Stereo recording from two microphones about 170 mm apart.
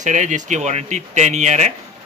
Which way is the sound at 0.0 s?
45° right (ahead or behind).